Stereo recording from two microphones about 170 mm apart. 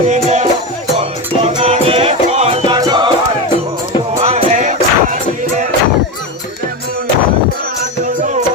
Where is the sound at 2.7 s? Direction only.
25° right (ahead or behind).